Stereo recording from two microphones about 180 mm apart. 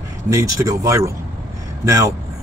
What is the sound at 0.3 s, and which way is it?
A man's voice, 20° right (ahead or behind).